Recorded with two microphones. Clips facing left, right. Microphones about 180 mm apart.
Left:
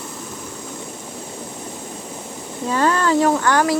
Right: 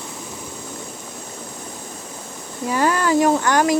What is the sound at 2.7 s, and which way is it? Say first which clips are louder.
Speech: left 1 dB; 15° right (ahead or behind).